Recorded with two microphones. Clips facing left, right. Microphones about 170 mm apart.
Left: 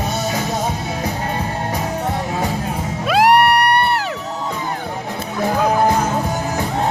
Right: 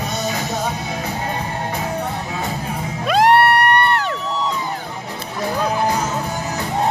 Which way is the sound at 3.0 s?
5° left (ahead or behind).